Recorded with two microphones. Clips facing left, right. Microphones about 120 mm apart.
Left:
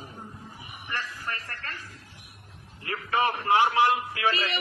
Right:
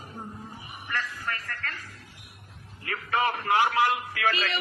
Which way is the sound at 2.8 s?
25° left (ahead or behind).